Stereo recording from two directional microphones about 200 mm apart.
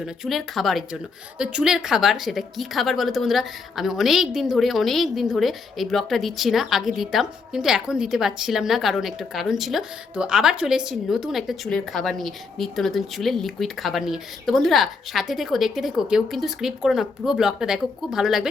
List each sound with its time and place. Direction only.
0.0 s a woman's voice: centre (ahead or behind)